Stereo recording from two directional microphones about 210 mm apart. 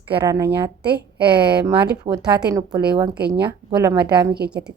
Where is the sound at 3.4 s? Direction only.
20° right (ahead or behind).